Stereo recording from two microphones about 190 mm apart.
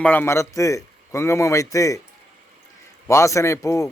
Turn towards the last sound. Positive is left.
turn(degrees=15)  # may be behind; listen again after turning